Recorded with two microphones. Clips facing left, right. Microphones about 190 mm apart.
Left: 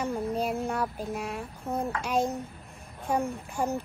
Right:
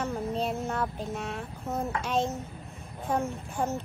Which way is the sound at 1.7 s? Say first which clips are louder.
Left 1 dB; 15° left (ahead or behind).